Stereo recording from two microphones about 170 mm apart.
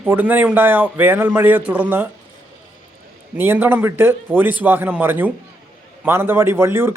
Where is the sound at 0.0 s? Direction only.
10° right (ahead or behind).